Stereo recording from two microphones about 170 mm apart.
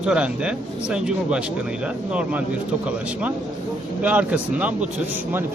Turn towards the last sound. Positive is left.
turn(degrees=-10)  # may be behind; listen again after turning